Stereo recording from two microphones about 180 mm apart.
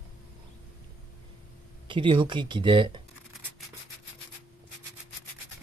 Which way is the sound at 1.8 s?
25° right (ahead or behind).